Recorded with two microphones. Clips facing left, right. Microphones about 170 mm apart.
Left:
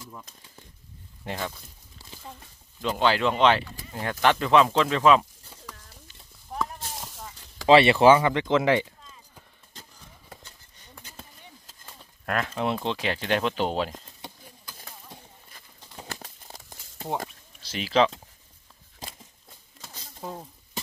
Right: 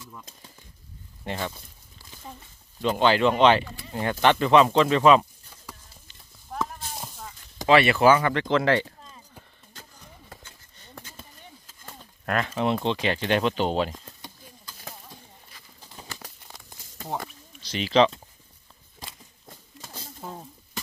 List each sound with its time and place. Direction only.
1.2 s speech: centre (ahead or behind)
2.8 s speech: centre (ahead or behind)
6.0 s clip-clop: 5° left (ahead or behind)
7.6 s speech: 30° left (ahead or behind)
8.2 s speech: 15° left (ahead or behind)
12.3 s speech: centre (ahead or behind)
17.6 s speech: 5° left (ahead or behind)